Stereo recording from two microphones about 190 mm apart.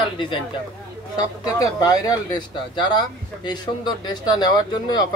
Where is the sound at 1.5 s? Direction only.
20° left (ahead or behind).